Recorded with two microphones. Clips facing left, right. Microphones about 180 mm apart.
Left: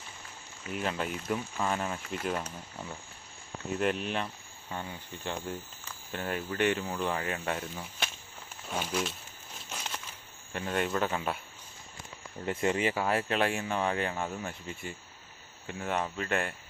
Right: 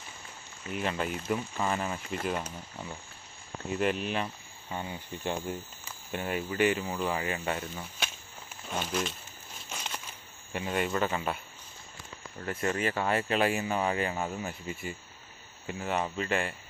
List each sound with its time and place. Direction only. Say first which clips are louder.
0.7 s speech: right 1 dB; centre (ahead or behind)
4.7 s speech: right 2 dB; 15° right (ahead or behind); by 9.1 s centre (ahead or behind)
9.6 s a sound: even; centre (ahead or behind)
10.5 s speech: right 1 dB; 5° right (ahead or behind)
12.4 s speech: left 2 dB; 20° left (ahead or behind)
13.0 s speech: right 1 dB; centre (ahead or behind)